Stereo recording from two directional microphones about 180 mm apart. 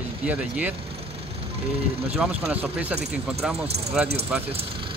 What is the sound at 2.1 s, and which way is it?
Speech, 10° right (ahead or behind).